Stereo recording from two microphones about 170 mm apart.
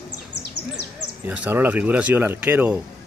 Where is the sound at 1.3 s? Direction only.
10° right (ahead or behind).